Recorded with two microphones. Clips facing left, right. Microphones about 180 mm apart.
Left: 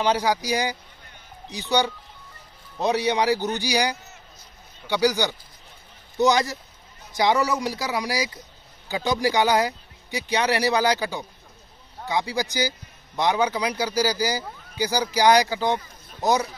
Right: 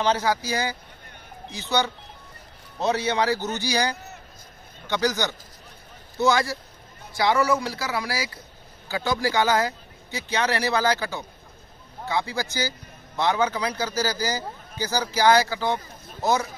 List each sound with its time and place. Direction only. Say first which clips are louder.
0.0 s a man's voice: left 1 dB; 15° left (ahead or behind)